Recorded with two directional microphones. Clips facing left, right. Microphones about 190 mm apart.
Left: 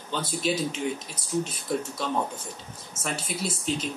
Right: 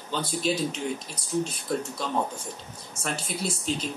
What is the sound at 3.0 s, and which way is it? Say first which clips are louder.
Speech: even; centre (ahead or behind).